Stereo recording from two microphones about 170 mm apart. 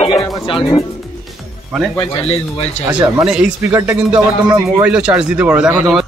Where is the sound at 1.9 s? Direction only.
35° left (ahead or behind).